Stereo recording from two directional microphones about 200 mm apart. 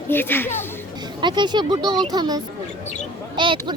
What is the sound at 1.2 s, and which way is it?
A woman's voice, 20° right (ahead or behind).